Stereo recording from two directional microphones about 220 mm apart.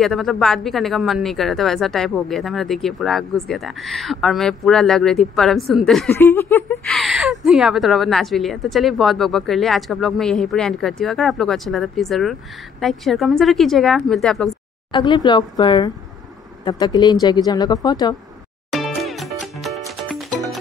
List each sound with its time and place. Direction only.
0.0 s speech: centre (ahead or behind)
14.9 s speech: 20° left (ahead or behind)
18.7 s music: centre (ahead or behind)